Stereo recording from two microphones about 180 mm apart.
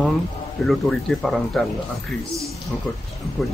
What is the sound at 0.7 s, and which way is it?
Speech, centre (ahead or behind).